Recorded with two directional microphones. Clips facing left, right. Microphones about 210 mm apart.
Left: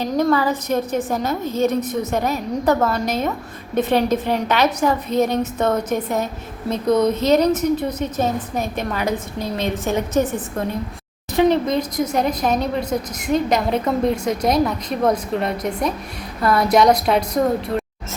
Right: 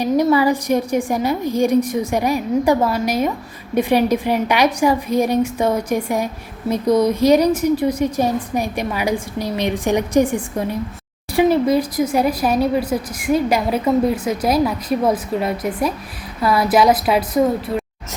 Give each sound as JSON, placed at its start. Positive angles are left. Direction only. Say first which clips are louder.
{"t": 0.0, "sound": "a woman's voice", "louder": "right 3 dB", "side_deg": -10}